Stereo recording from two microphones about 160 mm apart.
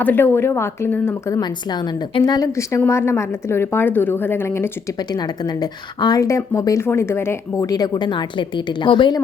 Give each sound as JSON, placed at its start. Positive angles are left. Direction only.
{"t": 0.0, "sound": "a woman's voice", "side_deg": 10}
{"t": 1.4, "sound": "a woman's voice", "side_deg": 25}